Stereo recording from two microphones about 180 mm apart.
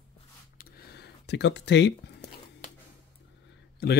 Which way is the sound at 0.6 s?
55° left (ahead or behind).